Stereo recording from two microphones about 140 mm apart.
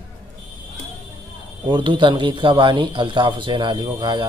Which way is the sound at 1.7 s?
35° right (ahead or behind).